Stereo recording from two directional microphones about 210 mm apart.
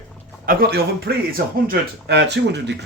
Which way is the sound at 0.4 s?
45° right (ahead or behind).